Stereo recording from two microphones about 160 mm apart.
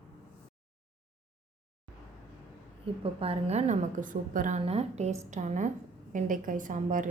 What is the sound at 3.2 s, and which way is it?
A woman's voice, 40° right (ahead or behind).